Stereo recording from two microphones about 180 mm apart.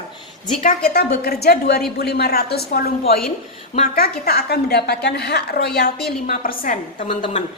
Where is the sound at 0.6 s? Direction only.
55° left (ahead or behind).